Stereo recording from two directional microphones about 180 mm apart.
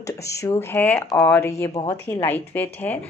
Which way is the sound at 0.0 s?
15° left (ahead or behind).